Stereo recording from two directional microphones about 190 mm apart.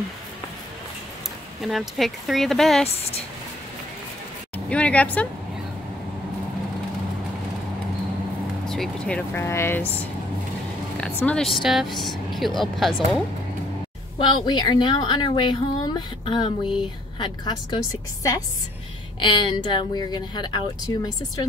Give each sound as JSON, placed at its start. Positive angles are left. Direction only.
{"t": 1.6, "sound": "speech", "side_deg": 0}
{"t": 4.6, "sound": "speech", "side_deg": 5}
{"t": 8.6, "sound": "speech", "side_deg": 0}
{"t": 11.2, "sound": "speech", "side_deg": 0}
{"t": 14.1, "sound": "speech", "side_deg": 25}
{"t": 19.1, "sound": "speech", "side_deg": 25}